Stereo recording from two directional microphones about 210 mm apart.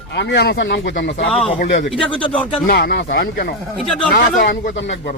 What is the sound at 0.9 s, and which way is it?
Speech, 40° left (ahead or behind).